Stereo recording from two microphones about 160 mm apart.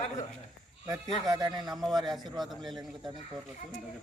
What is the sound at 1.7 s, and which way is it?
A man's voice, centre (ahead or behind).